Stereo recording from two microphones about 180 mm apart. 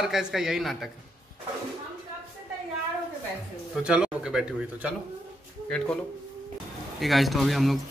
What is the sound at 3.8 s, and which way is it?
A man's voice, 5° right (ahead or behind).